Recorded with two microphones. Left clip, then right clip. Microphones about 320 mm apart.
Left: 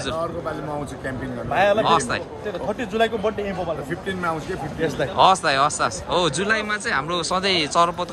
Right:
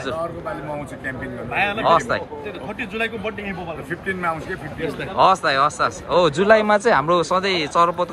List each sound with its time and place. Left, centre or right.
1.5 s a man's voice: centre
1.8 s speech: centre
5.1 s speech: centre